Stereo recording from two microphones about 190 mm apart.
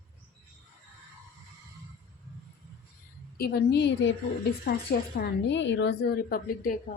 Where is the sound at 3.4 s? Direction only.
60° left (ahead or behind).